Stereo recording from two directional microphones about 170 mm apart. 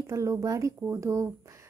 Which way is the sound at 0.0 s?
15° right (ahead or behind).